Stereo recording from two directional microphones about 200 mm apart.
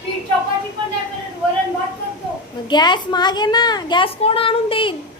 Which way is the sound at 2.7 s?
20° left (ahead or behind).